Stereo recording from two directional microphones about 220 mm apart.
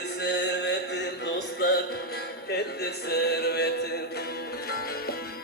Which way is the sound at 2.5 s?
45° left (ahead or behind).